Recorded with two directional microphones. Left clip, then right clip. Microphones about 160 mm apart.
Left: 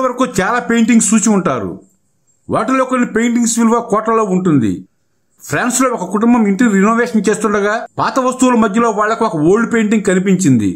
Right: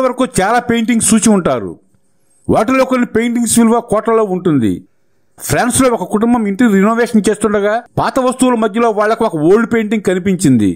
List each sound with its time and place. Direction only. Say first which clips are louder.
0.0 s speech: right 1 dB; 35° right (ahead or behind)